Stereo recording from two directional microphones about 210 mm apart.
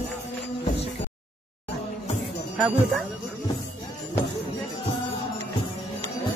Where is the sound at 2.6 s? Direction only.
5° right (ahead or behind).